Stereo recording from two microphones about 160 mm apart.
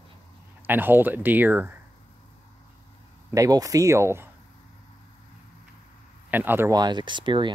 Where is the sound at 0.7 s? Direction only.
10° right (ahead or behind).